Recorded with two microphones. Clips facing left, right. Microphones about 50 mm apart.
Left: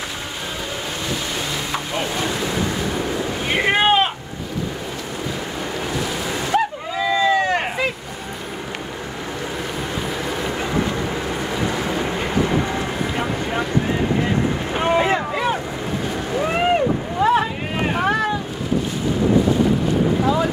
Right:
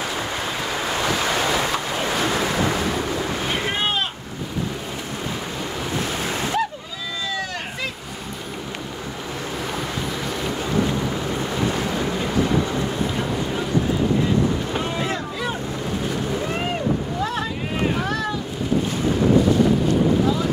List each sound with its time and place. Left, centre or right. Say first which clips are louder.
1.0 s waves: right 5 dB; right
3.4 s boat: left 11 dB; left
6.5 s a sound: left 4 dB; left
12.0 s boat: left 1 dB; left
14.8 s boat: left 7 dB; left